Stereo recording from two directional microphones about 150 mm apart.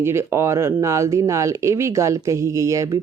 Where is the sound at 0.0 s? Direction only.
15° right (ahead or behind).